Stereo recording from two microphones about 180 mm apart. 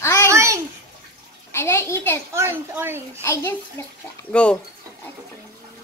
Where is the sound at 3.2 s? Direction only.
15° left (ahead or behind).